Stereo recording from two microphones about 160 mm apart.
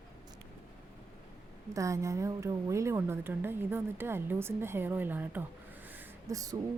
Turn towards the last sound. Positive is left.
turn(degrees=-20)  # may be behind; listen again after turning